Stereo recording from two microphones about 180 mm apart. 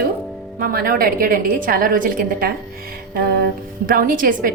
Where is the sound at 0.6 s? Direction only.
55° right (ahead or behind).